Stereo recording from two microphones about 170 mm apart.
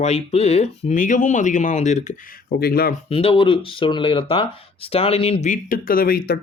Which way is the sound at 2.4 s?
65° left (ahead or behind).